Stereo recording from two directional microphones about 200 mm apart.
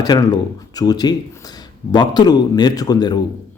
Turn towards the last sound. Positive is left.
turn(degrees=20)  # may be behind; listen again after turning